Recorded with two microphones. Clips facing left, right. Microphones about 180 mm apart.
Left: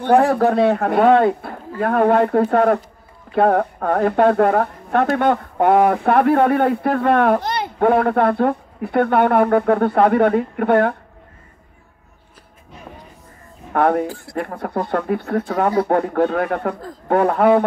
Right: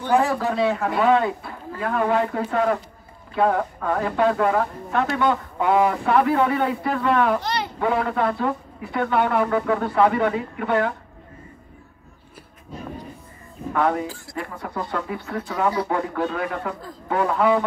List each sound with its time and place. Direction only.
0.0 s speech: 60° left (ahead or behind)
13.7 s speech: 55° left (ahead or behind)